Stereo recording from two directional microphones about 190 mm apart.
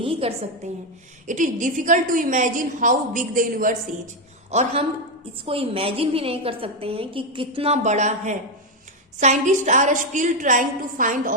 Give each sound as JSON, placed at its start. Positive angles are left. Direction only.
{"t": 0.0, "sound": "a woman's voice", "side_deg": -30}
{"t": 1.3, "sound": "a woman's voice", "side_deg": -40}
{"t": 4.5, "sound": "a woman's voice", "side_deg": -35}